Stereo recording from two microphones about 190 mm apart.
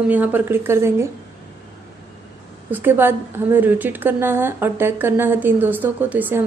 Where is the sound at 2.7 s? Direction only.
10° right (ahead or behind).